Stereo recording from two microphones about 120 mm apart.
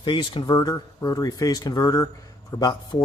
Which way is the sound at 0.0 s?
40° left (ahead or behind).